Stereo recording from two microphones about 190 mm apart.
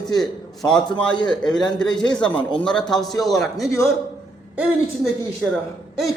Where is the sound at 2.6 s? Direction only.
5° left (ahead or behind).